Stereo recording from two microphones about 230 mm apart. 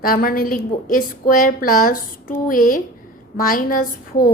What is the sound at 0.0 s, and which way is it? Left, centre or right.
A woman's voice, left.